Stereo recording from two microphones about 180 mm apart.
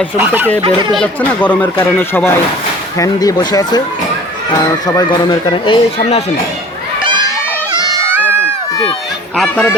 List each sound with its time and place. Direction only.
0.2 s speech: 10° right (ahead or behind)
0.6 s speech: 25° right (ahead or behind)
0.9 s speech: 5° left (ahead or behind); by 3.8 s 20° left (ahead or behind)
4.9 s speech: 20° left (ahead or behind)
6.0 s speech: 40° left (ahead or behind)
7.0 s crowd: 25° right (ahead or behind)
9.3 s speech: 5° left (ahead or behind)